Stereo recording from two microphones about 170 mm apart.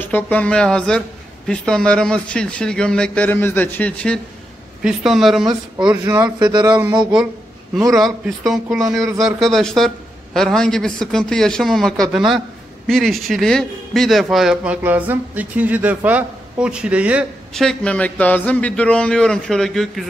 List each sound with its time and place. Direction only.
0.1 s a man's voice: 10° left (ahead or behind)
6.0 s speech: 20° right (ahead or behind)
7.9 s a man's voice: centre (ahead or behind)
17.6 s a man's voice: 5° left (ahead or behind)